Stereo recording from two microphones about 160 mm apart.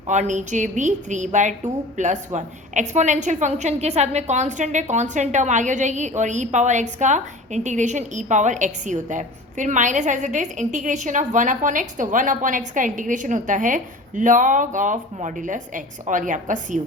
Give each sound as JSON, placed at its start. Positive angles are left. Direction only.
{"t": 0.1, "sound": "a woman's voice", "side_deg": -50}